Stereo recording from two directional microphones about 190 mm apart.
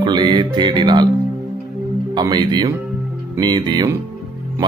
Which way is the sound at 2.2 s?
20° right (ahead or behind).